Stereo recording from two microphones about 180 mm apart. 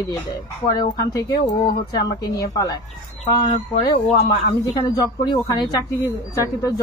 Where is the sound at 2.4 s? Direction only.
15° left (ahead or behind).